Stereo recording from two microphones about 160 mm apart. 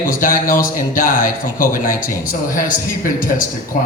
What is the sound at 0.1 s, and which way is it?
A man's voice, 60° left (ahead or behind).